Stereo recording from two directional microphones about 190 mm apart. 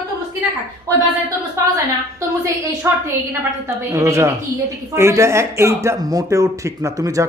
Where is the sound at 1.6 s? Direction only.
15° right (ahead or behind).